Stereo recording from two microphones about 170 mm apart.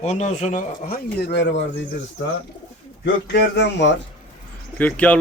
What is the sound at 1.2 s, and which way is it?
Speech, 90° left.